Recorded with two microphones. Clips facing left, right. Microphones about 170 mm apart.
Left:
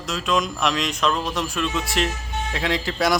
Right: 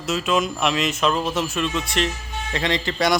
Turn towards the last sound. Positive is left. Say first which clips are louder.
# right 1 dB
turn(degrees=0)  # may be behind; listen again after turning